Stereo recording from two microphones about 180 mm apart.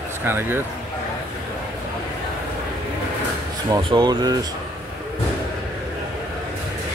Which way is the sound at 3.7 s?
25° right (ahead or behind).